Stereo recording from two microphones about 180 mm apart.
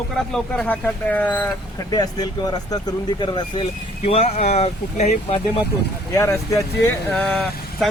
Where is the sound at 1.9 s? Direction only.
20° left (ahead or behind).